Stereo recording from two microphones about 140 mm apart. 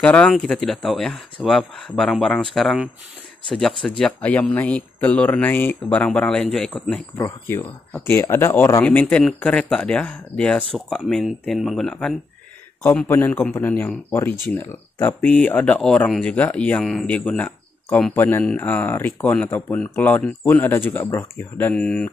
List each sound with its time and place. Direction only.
0.0 s speech: 10° left (ahead or behind)
7.2 s speech: 20° left (ahead or behind); by 12.2 s centre (ahead or behind)
12.8 s speech: 15° left (ahead or behind)